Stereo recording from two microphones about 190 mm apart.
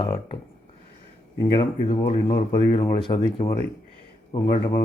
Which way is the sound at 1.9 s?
30° left (ahead or behind).